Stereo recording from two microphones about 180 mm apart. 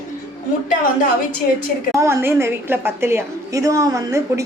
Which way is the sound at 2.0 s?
15° right (ahead or behind).